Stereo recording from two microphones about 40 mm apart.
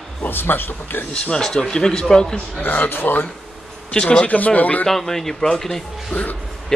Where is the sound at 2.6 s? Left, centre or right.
Left.